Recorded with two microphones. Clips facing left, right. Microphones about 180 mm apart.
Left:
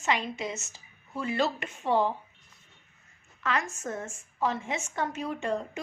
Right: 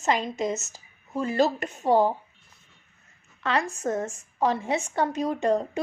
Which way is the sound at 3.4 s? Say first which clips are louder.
Right 4 dB; 35° right (ahead or behind).